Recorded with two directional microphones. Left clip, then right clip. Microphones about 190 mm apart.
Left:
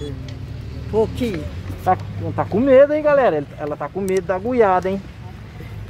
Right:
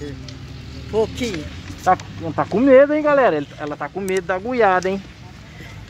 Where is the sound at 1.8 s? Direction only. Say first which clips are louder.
Right 2 dB; 30° right (ahead or behind).